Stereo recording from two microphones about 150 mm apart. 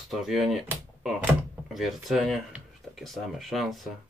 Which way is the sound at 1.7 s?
Centre (ahead or behind).